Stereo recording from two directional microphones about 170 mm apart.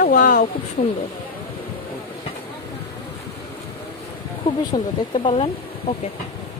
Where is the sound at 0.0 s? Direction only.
50° left (ahead or behind).